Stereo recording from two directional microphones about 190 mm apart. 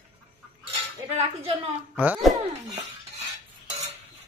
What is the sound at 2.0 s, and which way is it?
Speech, 10° right (ahead or behind).